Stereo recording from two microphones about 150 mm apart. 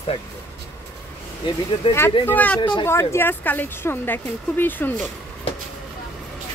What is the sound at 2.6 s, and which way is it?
Speech, 30° left (ahead or behind).